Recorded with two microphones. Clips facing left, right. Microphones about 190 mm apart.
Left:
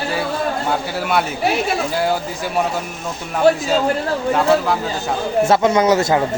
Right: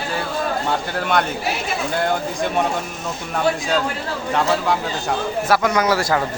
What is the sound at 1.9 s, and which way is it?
Speech, 5° left (ahead or behind).